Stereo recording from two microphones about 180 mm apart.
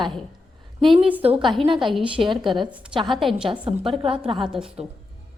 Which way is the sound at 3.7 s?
35° right (ahead or behind).